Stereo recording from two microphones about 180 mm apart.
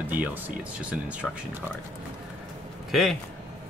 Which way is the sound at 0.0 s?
10° right (ahead or behind).